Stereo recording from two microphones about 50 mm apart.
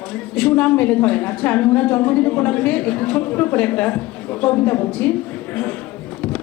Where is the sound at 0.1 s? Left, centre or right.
Left.